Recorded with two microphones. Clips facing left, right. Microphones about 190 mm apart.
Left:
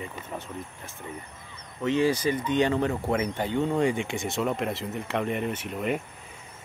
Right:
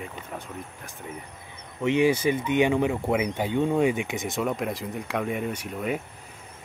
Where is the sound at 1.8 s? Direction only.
15° right (ahead or behind).